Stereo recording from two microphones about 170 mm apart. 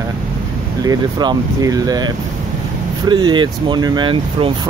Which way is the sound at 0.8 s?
25° right (ahead or behind).